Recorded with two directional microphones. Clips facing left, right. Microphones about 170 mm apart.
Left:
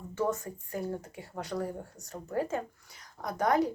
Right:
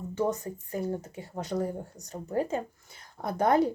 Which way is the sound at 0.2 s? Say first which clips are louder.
Right 2 dB; 20° right (ahead or behind).